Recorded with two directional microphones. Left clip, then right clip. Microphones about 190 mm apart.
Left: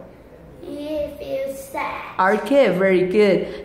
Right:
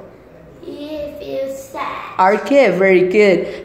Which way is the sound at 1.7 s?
20° left (ahead or behind).